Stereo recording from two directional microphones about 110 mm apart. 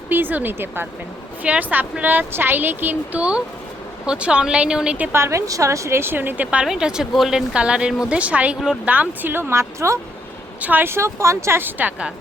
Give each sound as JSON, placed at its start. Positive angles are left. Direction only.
{"t": 0.1, "sound": "a woman's voice", "side_deg": -15}
{"t": 5.1, "sound": "a woman's voice", "side_deg": -25}